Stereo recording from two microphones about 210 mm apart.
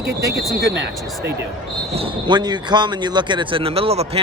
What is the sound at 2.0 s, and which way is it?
Speech, 25° right (ahead or behind).